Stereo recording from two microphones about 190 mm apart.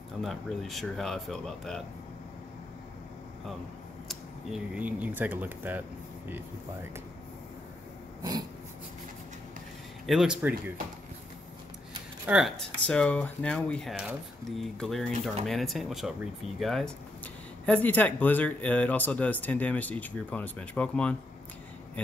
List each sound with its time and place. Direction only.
0.2 s speech: centre (ahead or behind)
4.1 s speech: 5° right (ahead or behind)
8.2 s a sound: 20° right (ahead or behind)
10.0 s speech: centre (ahead or behind)
12.3 s speech: centre (ahead or behind)